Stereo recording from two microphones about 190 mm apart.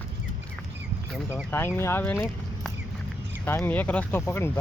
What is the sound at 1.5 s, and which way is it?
Speech, 15° left (ahead or behind).